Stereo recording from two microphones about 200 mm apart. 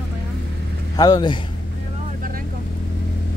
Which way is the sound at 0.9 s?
20° left (ahead or behind).